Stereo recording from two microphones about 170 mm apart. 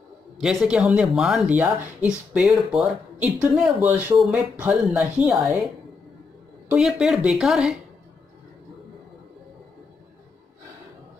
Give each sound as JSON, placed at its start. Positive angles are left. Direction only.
{"t": 0.4, "sound": "speech", "side_deg": -5}
{"t": 6.7, "sound": "speech", "side_deg": 0}